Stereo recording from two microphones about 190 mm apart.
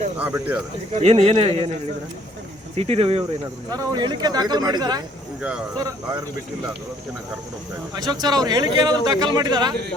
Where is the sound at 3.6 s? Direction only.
20° right (ahead or behind).